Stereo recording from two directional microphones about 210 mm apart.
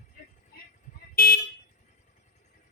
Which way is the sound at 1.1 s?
45° left (ahead or behind).